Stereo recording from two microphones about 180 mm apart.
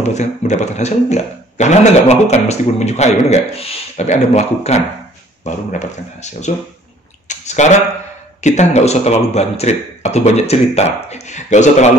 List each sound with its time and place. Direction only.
0.0 s speech: 40° left (ahead or behind)
7.2 s a sound: 40° left (ahead or behind)
8.4 s speech: 40° left (ahead or behind)